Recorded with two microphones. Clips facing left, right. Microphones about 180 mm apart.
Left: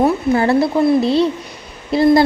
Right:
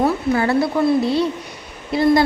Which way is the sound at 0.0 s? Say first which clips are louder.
Left 3 dB; 30° left (ahead or behind).